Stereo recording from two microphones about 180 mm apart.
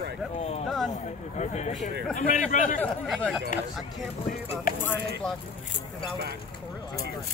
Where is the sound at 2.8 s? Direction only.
5° left (ahead or behind).